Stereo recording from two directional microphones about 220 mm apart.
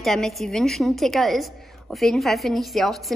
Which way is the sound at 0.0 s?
Centre (ahead or behind).